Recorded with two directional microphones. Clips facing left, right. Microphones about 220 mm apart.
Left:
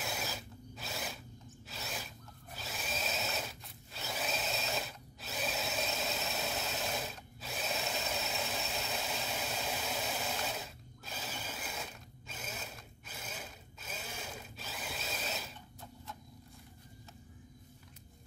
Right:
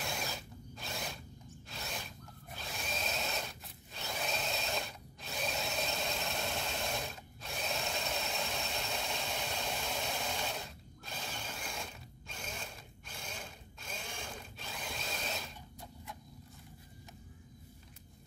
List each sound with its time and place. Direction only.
0.0 s mechanisms: 5° left (ahead or behind)
1.7 s drill: 5° left (ahead or behind)